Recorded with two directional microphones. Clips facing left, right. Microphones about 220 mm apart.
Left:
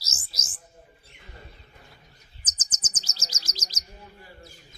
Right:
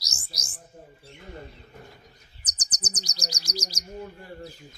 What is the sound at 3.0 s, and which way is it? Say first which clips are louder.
Speech: right 7 dB; 15° right (ahead or behind).